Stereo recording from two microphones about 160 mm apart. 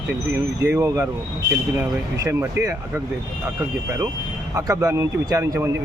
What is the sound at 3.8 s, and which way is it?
Speech, 20° right (ahead or behind).